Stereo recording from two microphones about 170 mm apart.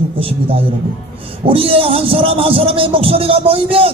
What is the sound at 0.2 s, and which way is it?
Speech, 35° right (ahead or behind).